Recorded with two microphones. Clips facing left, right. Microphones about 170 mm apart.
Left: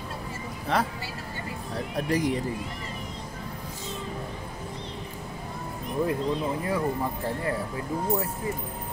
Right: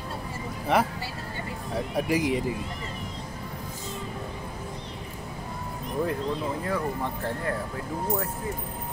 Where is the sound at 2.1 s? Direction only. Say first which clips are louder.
Even; 10° right (ahead or behind).